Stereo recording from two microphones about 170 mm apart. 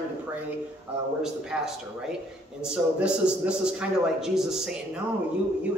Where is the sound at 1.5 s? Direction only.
5° right (ahead or behind).